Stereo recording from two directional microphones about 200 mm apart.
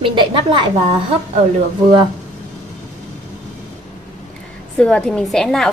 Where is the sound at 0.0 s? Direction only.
25° right (ahead or behind).